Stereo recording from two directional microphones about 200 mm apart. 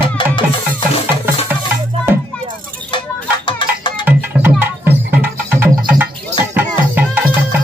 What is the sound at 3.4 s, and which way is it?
Music, 25° left (ahead or behind).